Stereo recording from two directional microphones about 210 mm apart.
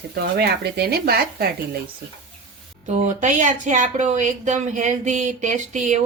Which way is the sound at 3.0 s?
35° right (ahead or behind).